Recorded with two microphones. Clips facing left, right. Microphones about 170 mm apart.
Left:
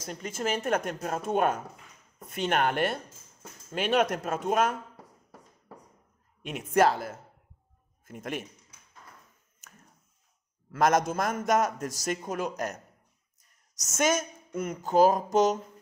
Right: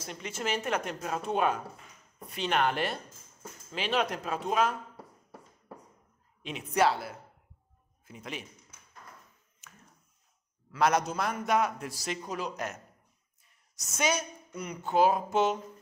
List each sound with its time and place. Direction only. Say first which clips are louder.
0.0 s speech: left 3 dB; 45° left (ahead or behind)
6.4 s a man's voice: left 3 dB; 50° left (ahead or behind)
9.6 s a sound: even; 40° left (ahead or behind)
10.7 s speech: left 3 dB; 45° left (ahead or behind)